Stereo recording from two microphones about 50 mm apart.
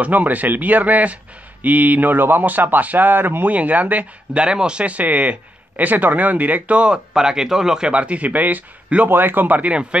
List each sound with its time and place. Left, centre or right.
0.0 s speech: right
3.5 s speech: right
6.8 s a man's voice: centre